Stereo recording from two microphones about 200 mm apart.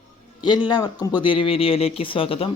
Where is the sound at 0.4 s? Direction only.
20° left (ahead or behind).